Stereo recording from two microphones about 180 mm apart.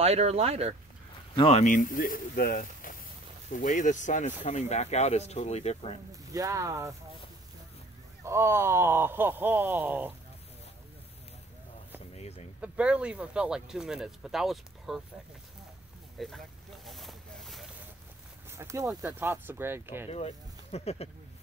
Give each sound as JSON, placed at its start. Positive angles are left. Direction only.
{"t": 0.0, "sound": "speech", "side_deg": -35}
{"t": 1.3, "sound": "speech", "side_deg": 35}
{"t": 6.3, "sound": "speech", "side_deg": -20}
{"t": 8.2, "sound": "speech", "side_deg": -15}
{"t": 12.1, "sound": "vehicle", "side_deg": 35}
{"t": 12.5, "sound": "speech", "side_deg": -5}
{"t": 16.2, "sound": "a sound", "side_deg": 0}
{"t": 18.5, "sound": "speech", "side_deg": -15}
{"t": 20.1, "sound": "speech", "side_deg": 35}